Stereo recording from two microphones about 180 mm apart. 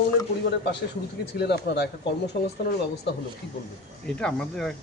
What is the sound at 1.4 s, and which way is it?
Speech, 65° left (ahead or behind).